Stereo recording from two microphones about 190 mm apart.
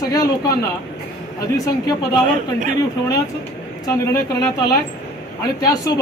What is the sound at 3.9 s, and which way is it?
A man's voice, 15° left (ahead or behind).